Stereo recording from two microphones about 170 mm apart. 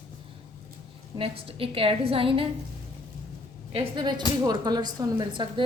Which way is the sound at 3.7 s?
30° right (ahead or behind).